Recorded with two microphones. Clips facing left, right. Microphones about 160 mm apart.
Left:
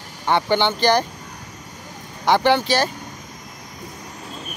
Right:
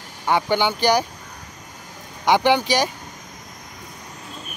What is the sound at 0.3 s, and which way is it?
Speech, 10° right (ahead or behind).